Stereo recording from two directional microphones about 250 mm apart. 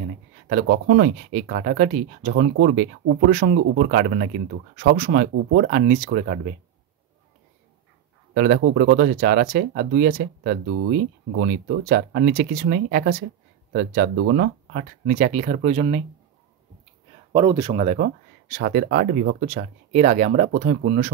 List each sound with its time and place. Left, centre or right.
0.5 s speech: right
8.4 s speech: right
17.3 s speech: centre
17.7 s speech: right